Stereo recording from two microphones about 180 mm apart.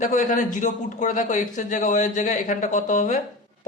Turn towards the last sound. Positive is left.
turn(degrees=45)  # may be behind; listen again after turning